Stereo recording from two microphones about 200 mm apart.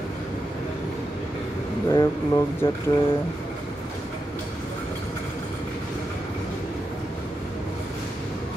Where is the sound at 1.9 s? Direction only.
15° left (ahead or behind).